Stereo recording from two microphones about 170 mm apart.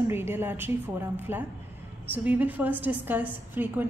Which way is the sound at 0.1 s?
15° right (ahead or behind).